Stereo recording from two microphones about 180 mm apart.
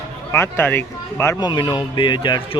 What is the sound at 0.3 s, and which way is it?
A man's voice, 15° left (ahead or behind).